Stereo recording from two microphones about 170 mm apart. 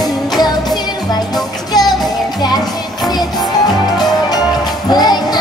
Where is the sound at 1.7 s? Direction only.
25° left (ahead or behind).